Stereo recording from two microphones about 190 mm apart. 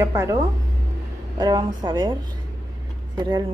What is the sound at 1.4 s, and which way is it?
Speech, 20° right (ahead or behind).